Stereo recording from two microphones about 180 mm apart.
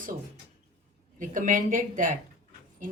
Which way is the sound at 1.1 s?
45° right (ahead or behind).